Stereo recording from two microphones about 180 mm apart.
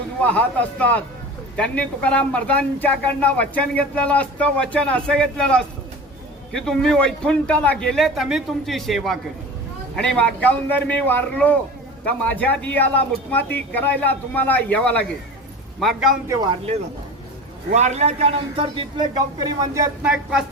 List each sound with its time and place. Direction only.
0.2 s a man's voice: 10° left (ahead or behind)
16.2 s speech: 15° right (ahead or behind)
17.7 s a man's voice: 40° right (ahead or behind); by 20.1 s 15° right (ahead or behind)